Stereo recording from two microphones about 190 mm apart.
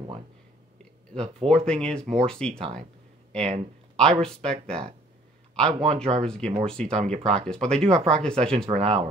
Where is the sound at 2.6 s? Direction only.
35° right (ahead or behind).